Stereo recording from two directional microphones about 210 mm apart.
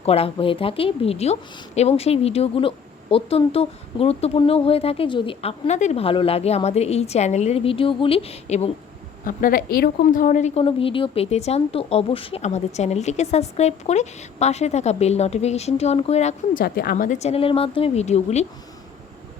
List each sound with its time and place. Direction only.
0.0 s a woman's voice: 30° left (ahead or behind)
9.2 s a woman's voice: 40° left (ahead or behind)
16.6 s a woman's voice: 50° left (ahead or behind); by 18.4 s 30° left (ahead or behind)